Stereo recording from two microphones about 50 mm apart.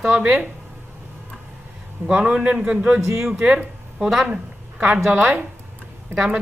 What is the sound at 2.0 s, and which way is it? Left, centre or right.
A man's voice, right.